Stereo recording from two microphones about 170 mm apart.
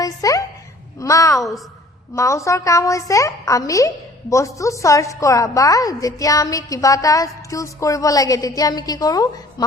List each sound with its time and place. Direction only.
0.0 s a woman's voice: 20° left (ahead or behind)